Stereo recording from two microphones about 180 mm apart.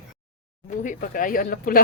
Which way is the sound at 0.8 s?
50° left (ahead or behind).